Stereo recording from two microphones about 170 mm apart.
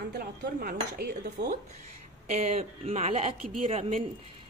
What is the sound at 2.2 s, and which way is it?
A man's voice, 40° right (ahead or behind).